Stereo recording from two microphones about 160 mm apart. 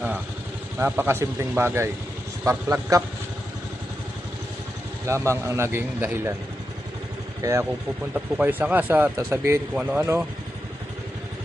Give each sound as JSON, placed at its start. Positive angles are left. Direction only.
{"t": 0.8, "sound": "speech", "side_deg": -15}
{"t": 5.0, "sound": "speech", "side_deg": -15}
{"t": 7.4, "sound": "speech", "side_deg": -15}